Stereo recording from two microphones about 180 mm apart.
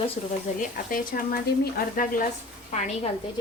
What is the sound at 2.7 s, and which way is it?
Speech, 40° left (ahead or behind).